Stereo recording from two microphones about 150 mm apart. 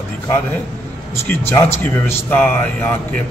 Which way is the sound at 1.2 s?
15° left (ahead or behind).